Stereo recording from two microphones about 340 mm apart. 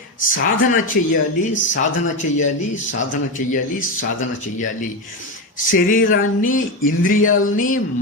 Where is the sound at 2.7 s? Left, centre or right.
Left.